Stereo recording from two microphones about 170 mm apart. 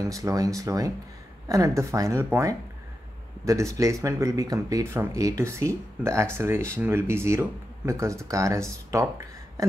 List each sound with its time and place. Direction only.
0.0 s speech: 20° right (ahead or behind)